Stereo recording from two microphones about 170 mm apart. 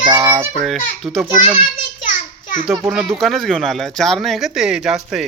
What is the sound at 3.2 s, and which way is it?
Speech, centre (ahead or behind).